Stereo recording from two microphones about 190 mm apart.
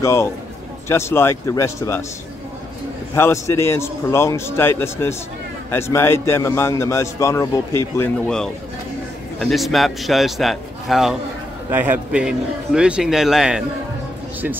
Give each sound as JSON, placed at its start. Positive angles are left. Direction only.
{"t": 0.0, "sound": "a man's voice", "side_deg": 15}
{"t": 3.2, "sound": "a man's voice", "side_deg": 15}
{"t": 8.0, "sound": "a man's voice", "side_deg": 5}